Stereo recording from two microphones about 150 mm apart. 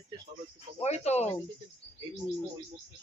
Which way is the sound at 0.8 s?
45° left (ahead or behind).